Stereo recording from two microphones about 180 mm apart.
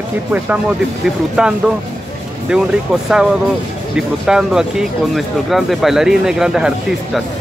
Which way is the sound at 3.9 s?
5° right (ahead or behind).